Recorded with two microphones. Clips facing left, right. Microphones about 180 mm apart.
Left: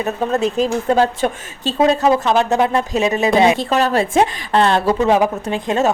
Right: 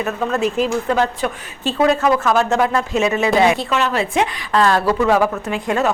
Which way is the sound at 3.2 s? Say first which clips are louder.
Left 2 dB; 20° left (ahead or behind).